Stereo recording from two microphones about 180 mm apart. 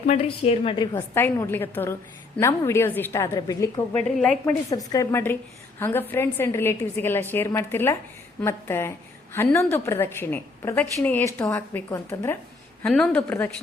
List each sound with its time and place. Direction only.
0.1 s a woman's voice: 35° left (ahead or behind)
0.9 s a woman's voice: 15° left (ahead or behind)
4.2 s a woman's voice: 5° left (ahead or behind)
12.8 s a woman's voice: 5° left (ahead or behind)